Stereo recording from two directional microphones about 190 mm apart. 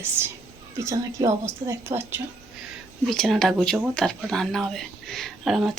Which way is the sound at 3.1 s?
Centre (ahead or behind).